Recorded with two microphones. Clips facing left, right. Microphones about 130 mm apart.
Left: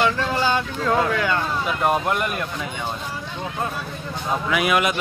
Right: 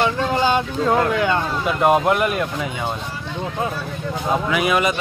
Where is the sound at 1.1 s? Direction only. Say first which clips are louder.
Right 3 dB; 20° right (ahead or behind).